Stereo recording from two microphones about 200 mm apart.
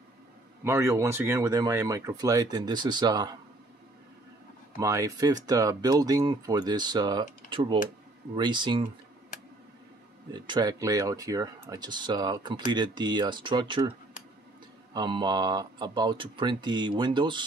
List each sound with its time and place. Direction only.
0.7 s speech: 10° right (ahead or behind)
4.7 s speech: 15° right (ahead or behind)
10.3 s speech: 20° right (ahead or behind)
15.0 s speech: 20° right (ahead or behind)